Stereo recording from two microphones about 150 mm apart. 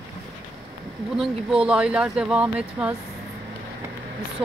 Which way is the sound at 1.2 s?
5° right (ahead or behind).